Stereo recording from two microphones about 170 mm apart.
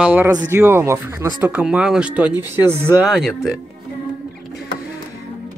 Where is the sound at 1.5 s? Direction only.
5° right (ahead or behind).